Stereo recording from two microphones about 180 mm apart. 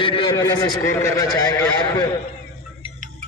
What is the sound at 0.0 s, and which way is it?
Speech, 30° left (ahead or behind).